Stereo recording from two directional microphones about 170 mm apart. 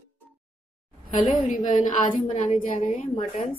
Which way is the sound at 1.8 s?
50° left (ahead or behind).